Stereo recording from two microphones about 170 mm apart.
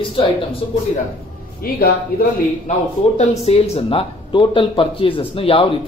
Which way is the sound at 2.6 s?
45° left (ahead or behind).